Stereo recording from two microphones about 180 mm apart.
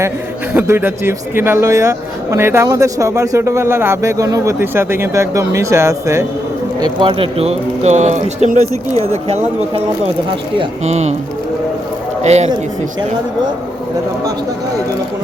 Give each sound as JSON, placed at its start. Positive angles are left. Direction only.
{"t": 0.5, "sound": "a man's voice", "side_deg": -10}
{"t": 6.8, "sound": "speech", "side_deg": -30}
{"t": 12.2, "sound": "speech", "side_deg": -40}